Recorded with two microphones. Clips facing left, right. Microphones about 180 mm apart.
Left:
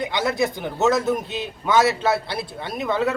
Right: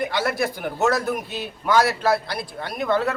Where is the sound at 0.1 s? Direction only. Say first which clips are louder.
Left 1 dB; 20° left (ahead or behind).